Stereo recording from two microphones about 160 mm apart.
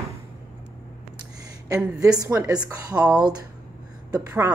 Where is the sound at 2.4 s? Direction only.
25° right (ahead or behind).